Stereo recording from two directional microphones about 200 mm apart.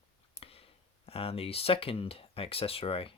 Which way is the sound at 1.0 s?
30° left (ahead or behind).